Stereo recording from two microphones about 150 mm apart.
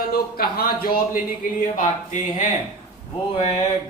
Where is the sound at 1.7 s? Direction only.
55° left (ahead or behind).